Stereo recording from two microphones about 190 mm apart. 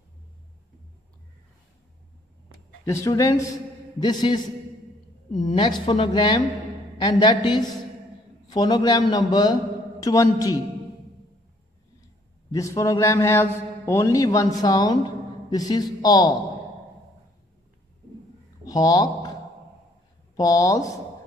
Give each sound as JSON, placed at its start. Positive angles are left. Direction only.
{"t": 2.8, "sound": "a man's voice", "side_deg": 15}
{"t": 5.6, "sound": "a man's voice", "side_deg": 25}
{"t": 12.4, "sound": "a man's voice", "side_deg": 15}
{"t": 18.7, "sound": "speech", "side_deg": 20}
{"t": 20.3, "sound": "a man's voice", "side_deg": 20}